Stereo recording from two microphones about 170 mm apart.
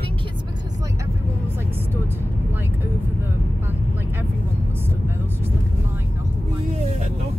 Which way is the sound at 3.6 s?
10° right (ahead or behind).